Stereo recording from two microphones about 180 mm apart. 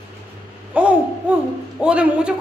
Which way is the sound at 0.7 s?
10° right (ahead or behind).